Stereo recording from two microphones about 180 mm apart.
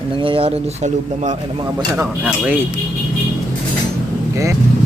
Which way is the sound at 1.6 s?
15° right (ahead or behind).